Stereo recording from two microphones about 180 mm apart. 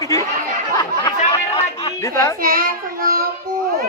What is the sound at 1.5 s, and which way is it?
Chatter, 25° left (ahead or behind).